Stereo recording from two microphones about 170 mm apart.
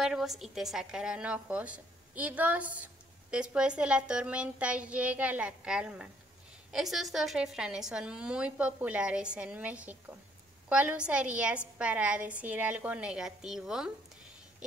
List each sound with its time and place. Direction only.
0.0 s a woman's voice: centre (ahead or behind)